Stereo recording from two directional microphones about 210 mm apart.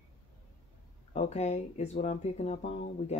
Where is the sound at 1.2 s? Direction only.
30° left (ahead or behind).